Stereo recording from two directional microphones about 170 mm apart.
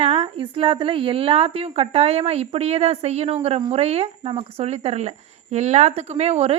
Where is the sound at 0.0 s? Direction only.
35° right (ahead or behind).